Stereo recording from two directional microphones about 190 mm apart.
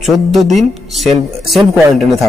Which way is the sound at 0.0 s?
Centre (ahead or behind).